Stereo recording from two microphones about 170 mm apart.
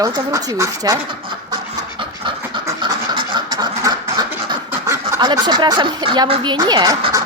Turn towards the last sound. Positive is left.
turn(degrees=-25)  # may be behind; listen again after turning